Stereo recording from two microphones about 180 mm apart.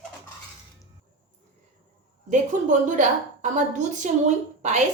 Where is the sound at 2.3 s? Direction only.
45° right (ahead or behind).